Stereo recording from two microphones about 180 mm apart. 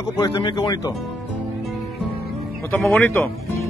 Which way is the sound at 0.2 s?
25° left (ahead or behind).